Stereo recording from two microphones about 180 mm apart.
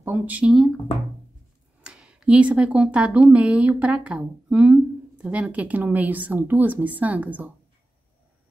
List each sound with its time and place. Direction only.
0.0 s speech: 10° right (ahead or behind)
1.8 s speech: 5° right (ahead or behind)